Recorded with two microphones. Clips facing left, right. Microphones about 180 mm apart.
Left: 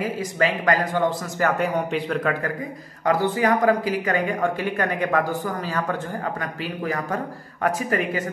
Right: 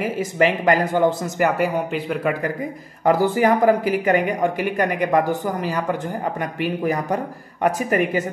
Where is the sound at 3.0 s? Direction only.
25° right (ahead or behind).